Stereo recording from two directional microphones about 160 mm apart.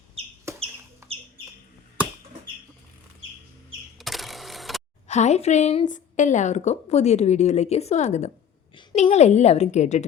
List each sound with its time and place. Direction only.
1.0 s chicken: 15° right (ahead or behind)
3.9 s a sound: centre (ahead or behind)
5.0 s a woman's voice: 45° left (ahead or behind)